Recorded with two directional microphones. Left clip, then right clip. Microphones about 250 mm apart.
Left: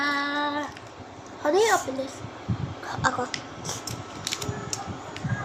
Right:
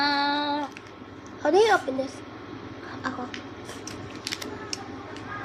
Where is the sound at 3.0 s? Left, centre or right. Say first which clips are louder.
Left 8 dB; left.